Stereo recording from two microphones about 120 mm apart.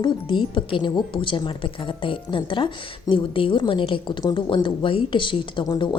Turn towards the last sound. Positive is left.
turn(degrees=40)  # may be behind; listen again after turning